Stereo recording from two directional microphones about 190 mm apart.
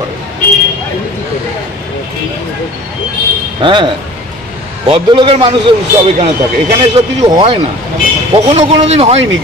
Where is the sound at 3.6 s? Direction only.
25° right (ahead or behind).